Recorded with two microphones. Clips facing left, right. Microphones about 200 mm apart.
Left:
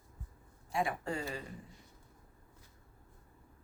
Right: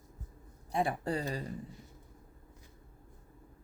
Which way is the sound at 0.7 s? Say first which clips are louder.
Right 3 dB; 35° right (ahead or behind).